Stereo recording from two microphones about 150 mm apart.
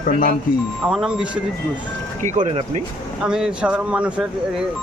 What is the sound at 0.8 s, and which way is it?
Speech, 5° right (ahead or behind).